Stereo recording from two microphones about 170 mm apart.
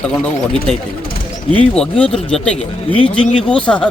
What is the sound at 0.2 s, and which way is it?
A man's voice, 5° left (ahead or behind).